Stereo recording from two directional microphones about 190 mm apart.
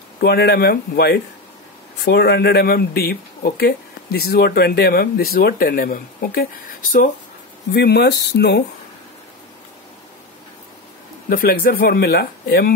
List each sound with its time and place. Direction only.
0.2 s speech: 60° left (ahead or behind)
7.7 s speech: 60° left (ahead or behind)
11.2 s speech: 50° left (ahead or behind)